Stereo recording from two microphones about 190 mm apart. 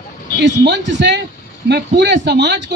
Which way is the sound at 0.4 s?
65° right (ahead or behind).